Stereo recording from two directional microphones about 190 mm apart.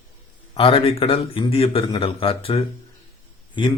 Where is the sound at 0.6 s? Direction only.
30° left (ahead or behind).